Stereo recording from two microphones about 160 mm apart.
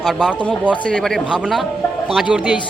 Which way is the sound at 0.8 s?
5° left (ahead or behind).